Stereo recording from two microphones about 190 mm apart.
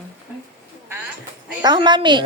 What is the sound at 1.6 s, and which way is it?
Speech, 25° right (ahead or behind).